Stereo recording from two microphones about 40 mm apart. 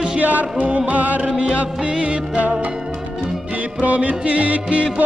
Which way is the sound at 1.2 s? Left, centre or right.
Right.